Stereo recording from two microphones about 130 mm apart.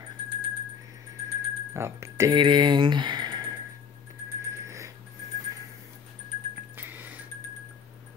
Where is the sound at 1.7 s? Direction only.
20° right (ahead or behind).